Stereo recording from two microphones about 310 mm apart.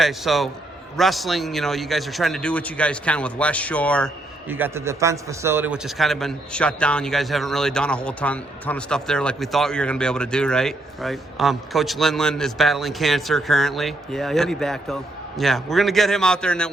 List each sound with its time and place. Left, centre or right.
0.0 s speech: centre